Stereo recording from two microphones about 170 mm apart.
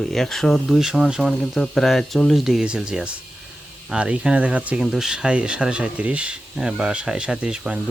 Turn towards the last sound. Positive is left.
turn(degrees=-5)  # may be behind; listen again after turning